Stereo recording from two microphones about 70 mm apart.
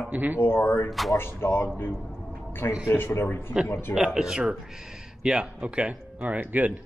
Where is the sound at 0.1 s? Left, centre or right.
Right.